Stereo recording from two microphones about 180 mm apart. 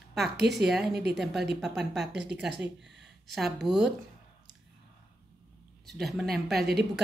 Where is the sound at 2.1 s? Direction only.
70° right (ahead or behind).